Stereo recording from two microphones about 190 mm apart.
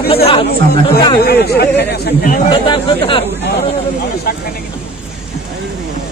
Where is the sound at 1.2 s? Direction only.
60° left (ahead or behind).